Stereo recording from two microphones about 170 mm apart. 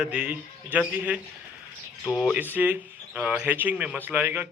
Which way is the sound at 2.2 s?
5° right (ahead or behind).